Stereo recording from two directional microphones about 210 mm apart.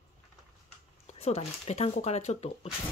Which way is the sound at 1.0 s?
30° left (ahead or behind).